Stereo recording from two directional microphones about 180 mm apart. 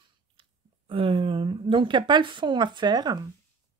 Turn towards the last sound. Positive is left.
turn(degrees=-20)  # may be behind; listen again after turning